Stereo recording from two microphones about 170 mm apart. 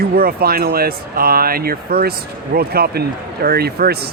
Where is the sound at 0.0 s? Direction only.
60° right (ahead or behind).